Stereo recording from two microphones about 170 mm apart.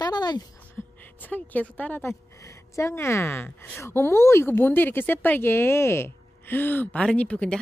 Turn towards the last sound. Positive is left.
turn(degrees=5)  # may be behind; listen again after turning